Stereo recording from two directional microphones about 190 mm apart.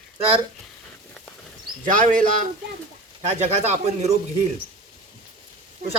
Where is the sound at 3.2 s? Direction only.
35° right (ahead or behind).